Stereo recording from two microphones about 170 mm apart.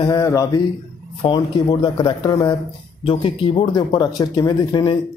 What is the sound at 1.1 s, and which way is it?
Speech, 30° left (ahead or behind).